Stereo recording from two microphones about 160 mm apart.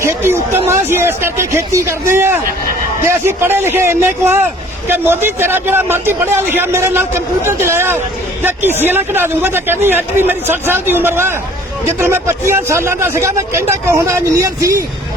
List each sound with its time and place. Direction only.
0.0 s speech: 15° right (ahead or behind)